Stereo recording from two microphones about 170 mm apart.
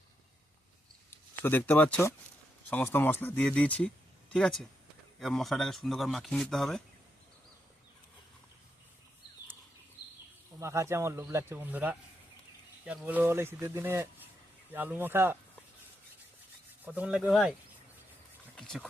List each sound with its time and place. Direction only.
1.1 s speech: 15° left (ahead or behind)
10.6 s speech: 15° right (ahead or behind)
16.8 s speech: 10° right (ahead or behind)
18.5 s a sound: 5° left (ahead or behind)